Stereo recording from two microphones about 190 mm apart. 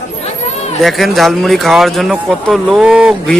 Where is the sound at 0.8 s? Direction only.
Centre (ahead or behind).